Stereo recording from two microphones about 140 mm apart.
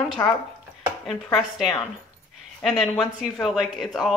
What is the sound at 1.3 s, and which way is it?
Speech, centre (ahead or behind).